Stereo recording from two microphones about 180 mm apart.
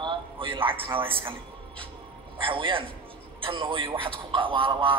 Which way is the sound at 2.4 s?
30° right (ahead or behind).